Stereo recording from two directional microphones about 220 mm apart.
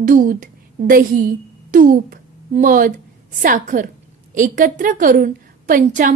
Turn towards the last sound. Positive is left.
turn(degrees=-35)  # may be behind; listen again after turning